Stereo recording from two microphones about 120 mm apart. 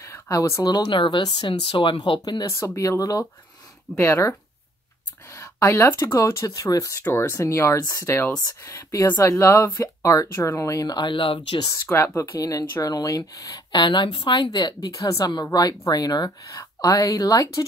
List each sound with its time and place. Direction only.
0.0 s speech: 25° left (ahead or behind)
3.9 s speech: 20° left (ahead or behind); by 11.7 s 40° left (ahead or behind)
11.7 s speech: 25° left (ahead or behind)
13.7 s speech: 40° left (ahead or behind)